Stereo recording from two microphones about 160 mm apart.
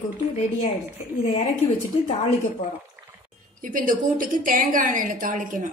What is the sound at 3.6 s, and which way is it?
A woman's voice, 60° right (ahead or behind).